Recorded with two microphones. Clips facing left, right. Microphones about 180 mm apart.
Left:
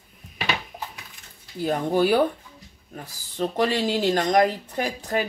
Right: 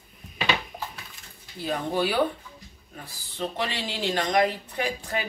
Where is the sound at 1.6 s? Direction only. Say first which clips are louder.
Left 5 dB; 45° left (ahead or behind).